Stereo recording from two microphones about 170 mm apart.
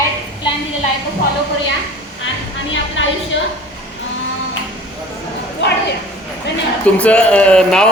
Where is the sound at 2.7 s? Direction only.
90° left.